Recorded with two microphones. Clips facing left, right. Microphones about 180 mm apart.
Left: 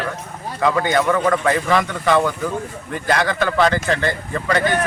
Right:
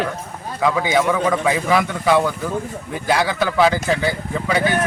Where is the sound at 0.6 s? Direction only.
5° right (ahead or behind).